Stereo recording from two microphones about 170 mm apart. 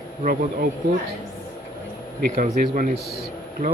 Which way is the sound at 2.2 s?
50° right (ahead or behind).